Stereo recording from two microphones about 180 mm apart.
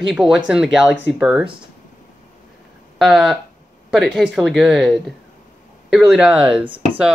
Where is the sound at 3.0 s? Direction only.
5° right (ahead or behind).